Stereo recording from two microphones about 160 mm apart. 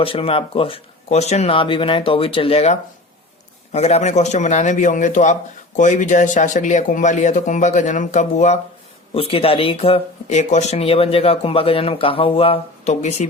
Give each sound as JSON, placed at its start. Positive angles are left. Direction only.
{"t": 0.0, "sound": "a man's voice", "side_deg": 35}
{"t": 9.1, "sound": "speech", "side_deg": 35}